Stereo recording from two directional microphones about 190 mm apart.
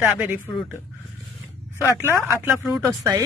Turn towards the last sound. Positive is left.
turn(degrees=-15)  # may be behind; listen again after turning